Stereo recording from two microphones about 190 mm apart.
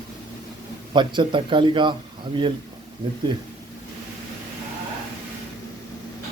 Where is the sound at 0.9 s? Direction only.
25° right (ahead or behind).